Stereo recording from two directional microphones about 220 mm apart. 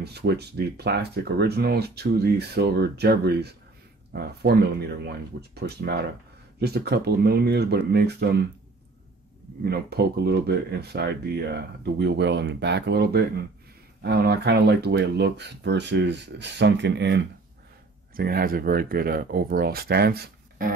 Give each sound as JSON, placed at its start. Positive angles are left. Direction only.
{"t": 0.0, "sound": "speech", "side_deg": -50}
{"t": 9.7, "sound": "speech", "side_deg": -45}
{"t": 18.1, "sound": "speech", "side_deg": -40}